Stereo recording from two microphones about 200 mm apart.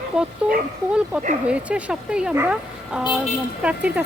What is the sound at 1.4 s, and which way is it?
Speech, 5° right (ahead or behind).